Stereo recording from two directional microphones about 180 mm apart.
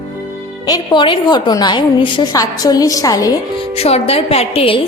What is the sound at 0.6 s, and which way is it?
A woman's voice, 20° left (ahead or behind).